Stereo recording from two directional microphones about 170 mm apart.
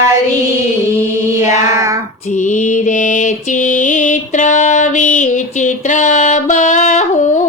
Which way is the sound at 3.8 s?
50° left (ahead or behind).